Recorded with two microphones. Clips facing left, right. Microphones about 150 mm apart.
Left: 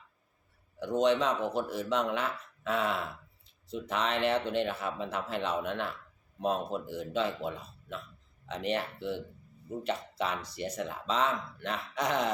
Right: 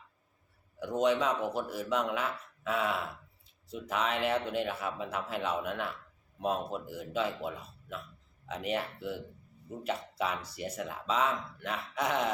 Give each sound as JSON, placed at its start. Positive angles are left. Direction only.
{"t": 0.8, "sound": "speech", "side_deg": -5}